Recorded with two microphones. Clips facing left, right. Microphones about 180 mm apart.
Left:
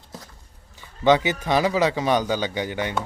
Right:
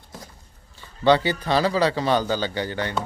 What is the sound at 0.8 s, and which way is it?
Speech, 15° left (ahead or behind).